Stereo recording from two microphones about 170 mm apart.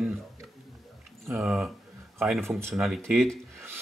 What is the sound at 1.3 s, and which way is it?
Speech, 5° right (ahead or behind).